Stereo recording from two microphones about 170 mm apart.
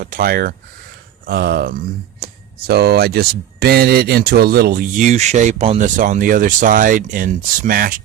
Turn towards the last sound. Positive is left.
turn(degrees=-55)  # may be behind; listen again after turning